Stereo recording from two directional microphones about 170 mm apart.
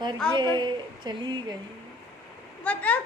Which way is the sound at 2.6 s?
10° left (ahead or behind).